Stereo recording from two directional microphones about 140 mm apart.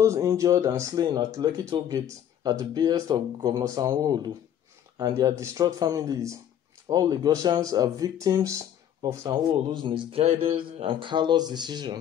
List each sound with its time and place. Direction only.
0.0 s speech: 20° right (ahead or behind)
9.7 s speech: 35° right (ahead or behind)